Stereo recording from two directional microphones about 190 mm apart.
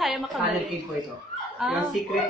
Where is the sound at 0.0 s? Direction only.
Centre (ahead or behind).